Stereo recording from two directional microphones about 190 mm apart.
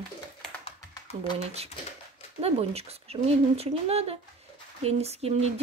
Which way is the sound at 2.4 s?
30° right (ahead or behind).